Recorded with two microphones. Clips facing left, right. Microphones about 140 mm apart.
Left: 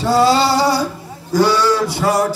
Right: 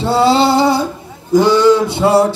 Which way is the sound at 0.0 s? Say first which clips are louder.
Right 2 dB; 25° right (ahead or behind).